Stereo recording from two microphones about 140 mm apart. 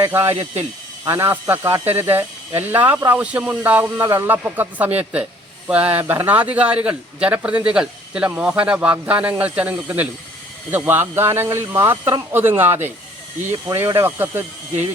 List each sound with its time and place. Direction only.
0.0 s a man's voice: 15° right (ahead or behind)